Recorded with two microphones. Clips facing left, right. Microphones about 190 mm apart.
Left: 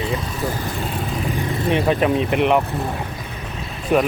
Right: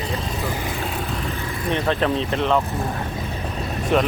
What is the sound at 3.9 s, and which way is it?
Speech, 5° left (ahead or behind).